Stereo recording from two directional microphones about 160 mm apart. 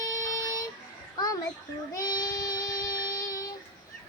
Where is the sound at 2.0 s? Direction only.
25° left (ahead or behind).